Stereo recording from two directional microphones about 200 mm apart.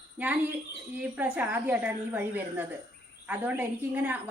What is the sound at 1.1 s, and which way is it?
A woman's voice, 5° right (ahead or behind).